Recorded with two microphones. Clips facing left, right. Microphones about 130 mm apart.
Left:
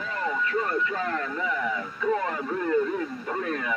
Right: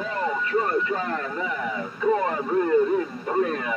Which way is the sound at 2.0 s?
25° right (ahead or behind).